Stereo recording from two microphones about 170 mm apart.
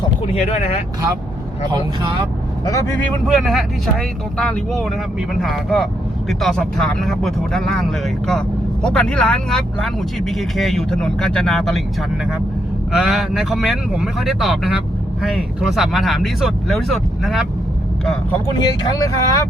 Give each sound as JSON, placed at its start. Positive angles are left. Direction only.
{"t": 0.3, "sound": "speech", "side_deg": 40}
{"t": 2.6, "sound": "speech", "side_deg": 20}
{"t": 3.0, "sound": "speech", "side_deg": 0}
{"t": 12.9, "sound": "speech", "side_deg": -5}
{"t": 18.6, "sound": "speech", "side_deg": 25}